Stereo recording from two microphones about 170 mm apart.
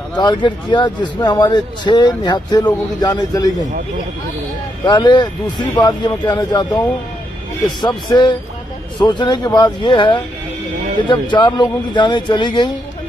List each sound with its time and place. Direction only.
0.1 s a man's voice: 25° left (ahead or behind)
4.8 s a man's voice: 25° left (ahead or behind)